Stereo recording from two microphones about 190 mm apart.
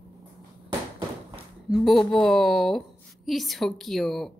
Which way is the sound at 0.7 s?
25° right (ahead or behind).